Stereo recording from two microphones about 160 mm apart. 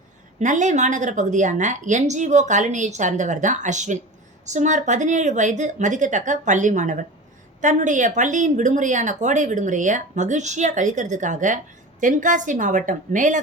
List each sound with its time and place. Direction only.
0.3 s speech: 50° right (ahead or behind)